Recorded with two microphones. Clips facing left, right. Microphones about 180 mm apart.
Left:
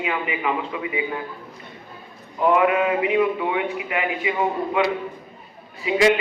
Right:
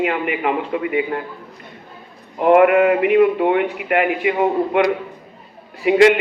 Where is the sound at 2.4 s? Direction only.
60° right (ahead or behind).